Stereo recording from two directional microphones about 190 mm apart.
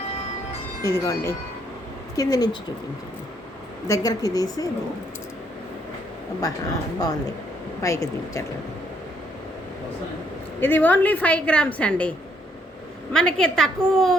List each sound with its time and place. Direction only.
0.8 s a woman's voice: 15° left (ahead or behind)
3.8 s a woman's voice: 20° left (ahead or behind)
7.0 s a woman's voice: 20° left (ahead or behind)
10.6 s a woman's voice: 10° left (ahead or behind)
13.1 s a woman's voice: 5° left (ahead or behind)